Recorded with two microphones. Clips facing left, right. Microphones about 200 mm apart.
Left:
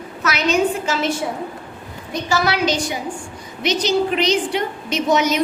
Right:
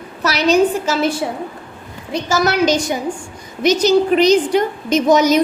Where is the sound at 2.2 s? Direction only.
45° right (ahead or behind).